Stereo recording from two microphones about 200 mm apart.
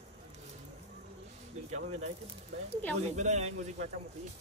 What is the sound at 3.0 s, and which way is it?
Speech, 35° right (ahead or behind).